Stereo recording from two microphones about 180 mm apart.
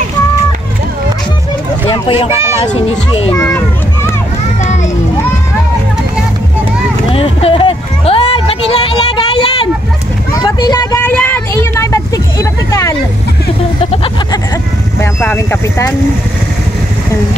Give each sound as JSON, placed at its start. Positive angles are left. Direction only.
{"t": 1.9, "sound": "speech", "side_deg": 30}
{"t": 2.3, "sound": "a child's voice", "side_deg": -15}
{"t": 2.6, "sound": "a child's voice", "side_deg": 25}
{"t": 3.3, "sound": "children playing", "side_deg": 15}
{"t": 7.1, "sound": "a sound", "side_deg": 30}
{"t": 11.1, "sound": "vehicle", "side_deg": 10}
{"t": 13.7, "sound": "vehicle", "side_deg": 30}
{"t": 15.0, "sound": "speech", "side_deg": 15}